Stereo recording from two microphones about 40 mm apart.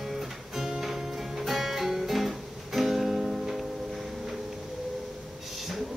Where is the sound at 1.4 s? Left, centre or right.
Centre.